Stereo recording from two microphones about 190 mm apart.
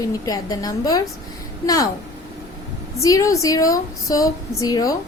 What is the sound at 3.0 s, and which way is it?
A woman's voice, 15° left (ahead or behind).